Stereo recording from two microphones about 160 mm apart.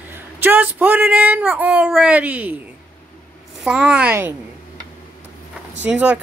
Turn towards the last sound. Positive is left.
turn(degrees=-10)  # may be behind; listen again after turning